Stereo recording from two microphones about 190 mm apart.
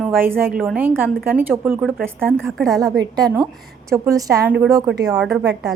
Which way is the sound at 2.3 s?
Centre (ahead or behind).